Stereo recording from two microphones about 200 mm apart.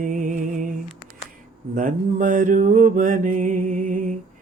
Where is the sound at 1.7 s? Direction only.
40° right (ahead or behind).